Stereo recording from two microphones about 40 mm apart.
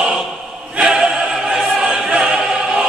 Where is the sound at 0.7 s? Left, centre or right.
Right.